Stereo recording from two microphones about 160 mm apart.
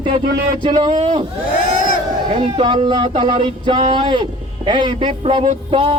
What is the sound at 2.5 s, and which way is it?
A man's voice, 30° right (ahead or behind).